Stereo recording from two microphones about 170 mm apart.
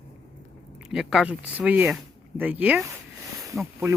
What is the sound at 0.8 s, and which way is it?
Speech, 5° right (ahead or behind).